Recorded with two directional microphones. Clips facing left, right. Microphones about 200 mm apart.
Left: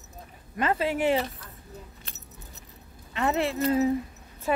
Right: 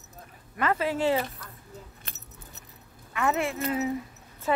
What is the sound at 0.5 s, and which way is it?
Speech, 25° left (ahead or behind).